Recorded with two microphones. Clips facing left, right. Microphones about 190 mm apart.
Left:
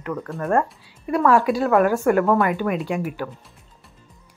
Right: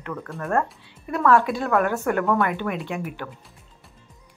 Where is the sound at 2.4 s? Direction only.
5° left (ahead or behind).